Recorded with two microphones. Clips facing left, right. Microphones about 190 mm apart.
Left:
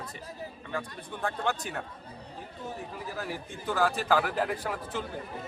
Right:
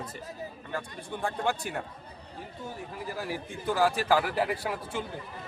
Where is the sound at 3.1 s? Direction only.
10° right (ahead or behind).